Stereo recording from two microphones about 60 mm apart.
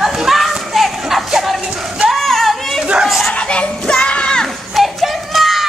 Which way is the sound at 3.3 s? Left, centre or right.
Centre.